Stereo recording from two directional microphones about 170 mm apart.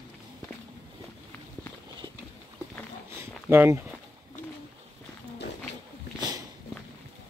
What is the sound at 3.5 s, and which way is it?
Speech, 10° right (ahead or behind).